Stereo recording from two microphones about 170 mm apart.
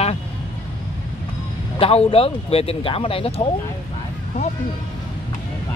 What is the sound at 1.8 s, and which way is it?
Speech, 35° left (ahead or behind).